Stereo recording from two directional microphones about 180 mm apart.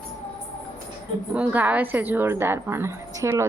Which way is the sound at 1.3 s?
10° right (ahead or behind).